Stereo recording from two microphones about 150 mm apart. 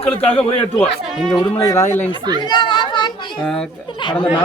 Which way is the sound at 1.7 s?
15° left (ahead or behind).